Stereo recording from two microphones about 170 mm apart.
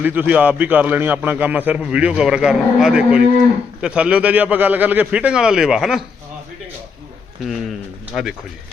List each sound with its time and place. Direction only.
0.0 s a man's voice: 10° right (ahead or behind)
8.1 s speech: centre (ahead or behind)